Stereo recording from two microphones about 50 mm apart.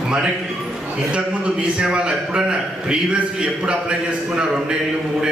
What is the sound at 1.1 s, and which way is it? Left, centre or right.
A man's voice, right.